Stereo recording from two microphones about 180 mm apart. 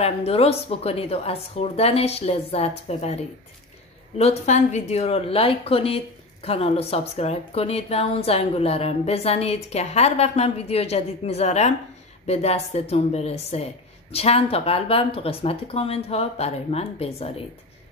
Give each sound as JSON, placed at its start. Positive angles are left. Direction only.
{"t": 0.0, "sound": "a woman's voice", "side_deg": 35}
{"t": 4.2, "sound": "a woman's voice", "side_deg": 35}